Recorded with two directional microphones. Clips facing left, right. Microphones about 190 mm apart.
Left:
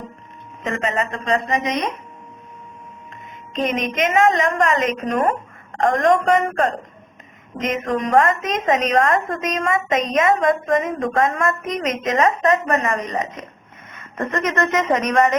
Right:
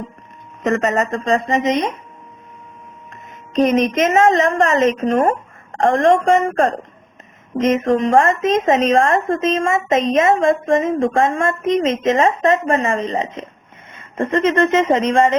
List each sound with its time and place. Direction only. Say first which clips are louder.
0.6 s music: right 6 dB; 40° right (ahead or behind)
1.2 s a woman's voice: right 2 dB; 25° right (ahead or behind)
3.5 s music: right 7 dB; 45° right (ahead or behind)
4.2 s a woman's voice: right 2 dB; 25° right (ahead or behind)
4.6 s music: right 4 dB; 45° right (ahead or behind)
5.8 s a woman's voice: right 3 dB; 25° right (ahead or behind)
7.6 s a woman's voice: right 7 dB; 25° right (ahead or behind)